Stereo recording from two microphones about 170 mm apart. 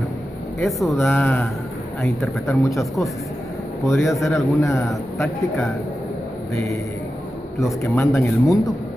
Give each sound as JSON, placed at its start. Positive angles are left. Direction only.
{"t": 0.6, "sound": "speech", "side_deg": 0}
{"t": 3.8, "sound": "speech", "side_deg": 0}
{"t": 4.3, "sound": "speech", "side_deg": 15}
{"t": 4.8, "sound": "speech", "side_deg": 0}
{"t": 7.6, "sound": "speech", "side_deg": 15}